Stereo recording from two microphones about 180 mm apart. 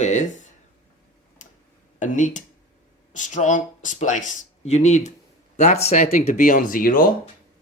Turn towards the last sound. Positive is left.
turn(degrees=50)  # may be behind; listen again after turning